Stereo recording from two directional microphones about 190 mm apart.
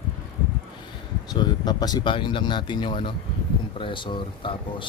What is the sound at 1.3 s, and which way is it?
Speech, 20° left (ahead or behind).